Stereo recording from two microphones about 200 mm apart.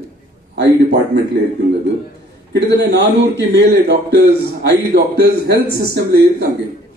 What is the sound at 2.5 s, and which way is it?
A man's voice, 60° right (ahead or behind).